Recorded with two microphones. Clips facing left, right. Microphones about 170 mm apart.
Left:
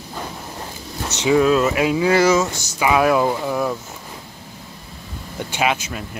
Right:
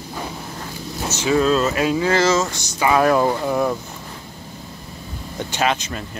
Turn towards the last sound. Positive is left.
turn(degrees=10)  # may be behind; listen again after turning